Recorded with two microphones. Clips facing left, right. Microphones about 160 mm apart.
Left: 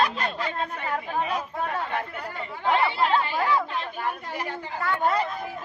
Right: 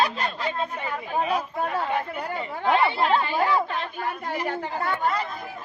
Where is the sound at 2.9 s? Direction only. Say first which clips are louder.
Right 1 dB; 30° right (ahead or behind).